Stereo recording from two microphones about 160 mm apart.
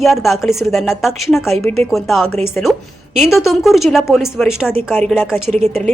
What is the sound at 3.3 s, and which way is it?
Speech, centre (ahead or behind).